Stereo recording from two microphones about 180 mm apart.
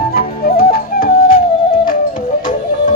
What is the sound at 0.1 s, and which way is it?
Flute, 60° left (ahead or behind).